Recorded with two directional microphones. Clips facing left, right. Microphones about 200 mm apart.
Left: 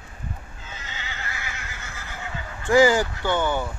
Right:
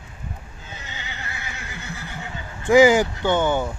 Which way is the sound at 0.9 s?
15° right (ahead or behind).